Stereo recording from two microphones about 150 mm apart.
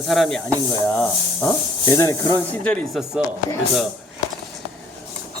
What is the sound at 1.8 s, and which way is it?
Speech, 20° left (ahead or behind).